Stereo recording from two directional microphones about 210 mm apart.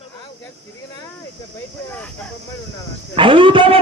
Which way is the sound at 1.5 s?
5° left (ahead or behind).